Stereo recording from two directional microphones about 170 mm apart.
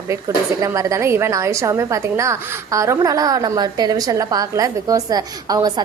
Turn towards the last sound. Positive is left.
turn(degrees=-25)  # may be behind; listen again after turning